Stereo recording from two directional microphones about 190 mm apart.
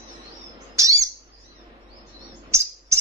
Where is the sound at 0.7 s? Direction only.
15° right (ahead or behind).